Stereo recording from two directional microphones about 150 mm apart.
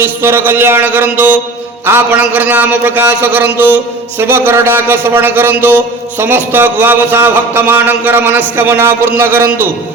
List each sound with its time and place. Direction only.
0.0 s a man's voice: 15° right (ahead or behind)